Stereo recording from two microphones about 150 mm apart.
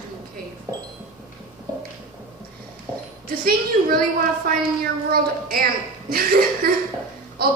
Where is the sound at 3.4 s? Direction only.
75° right (ahead or behind).